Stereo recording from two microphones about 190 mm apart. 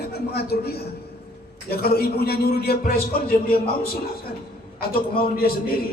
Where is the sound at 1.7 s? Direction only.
55° left (ahead or behind).